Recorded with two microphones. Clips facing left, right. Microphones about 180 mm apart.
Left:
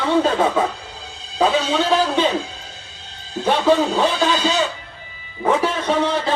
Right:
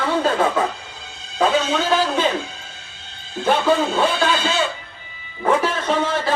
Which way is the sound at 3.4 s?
Centre (ahead or behind).